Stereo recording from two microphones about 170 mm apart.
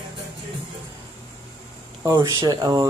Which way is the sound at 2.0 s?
20° right (ahead or behind).